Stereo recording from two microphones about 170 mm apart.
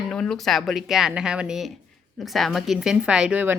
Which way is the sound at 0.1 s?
5° left (ahead or behind).